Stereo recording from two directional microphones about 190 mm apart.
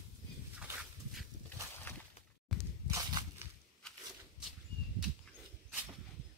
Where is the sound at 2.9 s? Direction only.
20° right (ahead or behind).